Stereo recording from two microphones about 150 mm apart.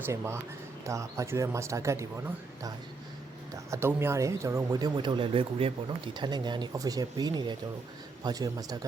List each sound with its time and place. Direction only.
0.0 s speech: 15° right (ahead or behind)